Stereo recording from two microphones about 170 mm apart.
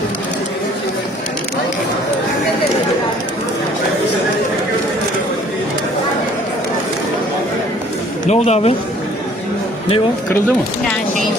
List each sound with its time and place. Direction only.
8.3 s speech: 40° left (ahead or behind)